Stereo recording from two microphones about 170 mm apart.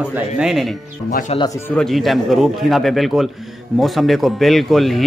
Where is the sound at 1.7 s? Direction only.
Centre (ahead or behind).